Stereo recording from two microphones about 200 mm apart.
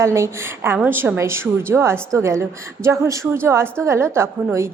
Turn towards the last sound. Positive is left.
turn(degrees=-15)  # may be behind; listen again after turning